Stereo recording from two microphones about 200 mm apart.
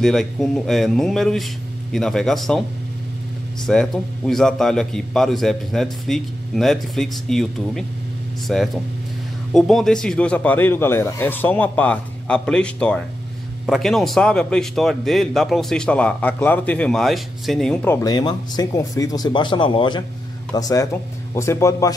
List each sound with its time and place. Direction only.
0.0 s a man's voice: centre (ahead or behind)
3.6 s a man's voice: centre (ahead or behind)